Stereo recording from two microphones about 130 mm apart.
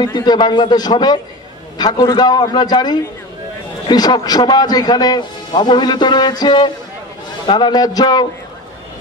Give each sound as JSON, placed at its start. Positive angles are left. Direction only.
{"t": 0.0, "sound": "a man's voice", "side_deg": 30}